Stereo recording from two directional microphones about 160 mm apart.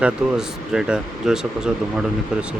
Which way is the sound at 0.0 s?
5° right (ahead or behind).